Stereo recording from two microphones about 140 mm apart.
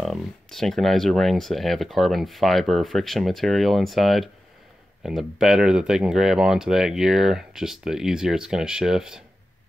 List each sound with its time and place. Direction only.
0.0 s speech: centre (ahead or behind)